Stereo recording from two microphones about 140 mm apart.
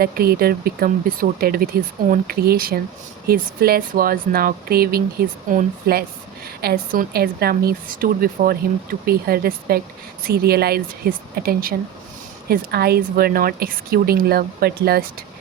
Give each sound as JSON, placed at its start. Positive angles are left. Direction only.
{"t": 0.0, "sound": "speech", "side_deg": -90}
{"t": 5.5, "sound": "speech", "side_deg": -80}
{"t": 6.6, "sound": "speech", "side_deg": -90}